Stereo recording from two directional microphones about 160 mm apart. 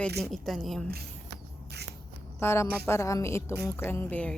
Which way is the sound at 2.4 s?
15° left (ahead or behind).